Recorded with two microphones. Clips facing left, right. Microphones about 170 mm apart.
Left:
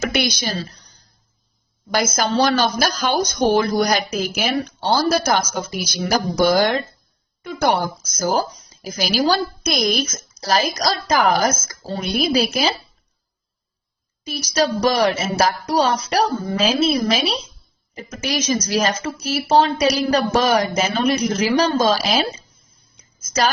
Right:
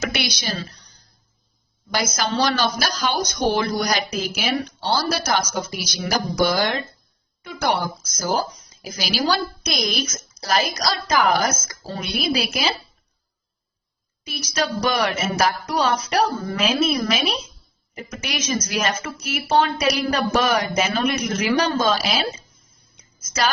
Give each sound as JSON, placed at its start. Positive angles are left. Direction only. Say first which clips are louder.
{"t": 0.2, "sound": "a woman's voice", "louder": "left 5 dB", "side_deg": 45}
{"t": 0.7, "sound": "a sound", "louder": "left 1 dB", "side_deg": 40}
{"t": 1.9, "sound": "a woman's voice", "louder": "left 4 dB", "side_deg": 50}
{"t": 9.0, "sound": "a woman's voice", "louder": "left 4 dB", "side_deg": 45}
{"t": 14.3, "sound": "a woman's voice", "louder": "left 5 dB", "side_deg": 35}
{"t": 16.3, "sound": "a woman's voice", "louder": "left 3 dB", "side_deg": 20}
{"t": 16.6, "sound": "a woman's voice", "louder": "left 3 dB", "side_deg": 30}